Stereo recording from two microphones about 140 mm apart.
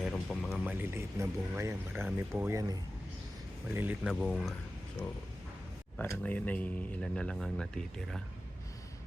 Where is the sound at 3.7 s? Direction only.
15° right (ahead or behind).